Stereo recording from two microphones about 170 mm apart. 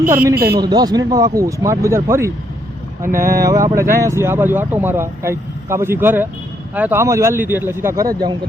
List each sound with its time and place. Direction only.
0.0 s a man's voice: 55° right (ahead or behind)
0.3 s a man's voice: 65° right (ahead or behind)
0.6 s speech: 25° right (ahead or behind)
3.1 s a man's voice: 55° right (ahead or behind)
3.3 s speech: 20° right (ahead or behind)